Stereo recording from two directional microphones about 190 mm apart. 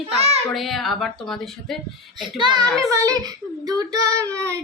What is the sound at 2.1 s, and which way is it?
Speech, 25° right (ahead or behind).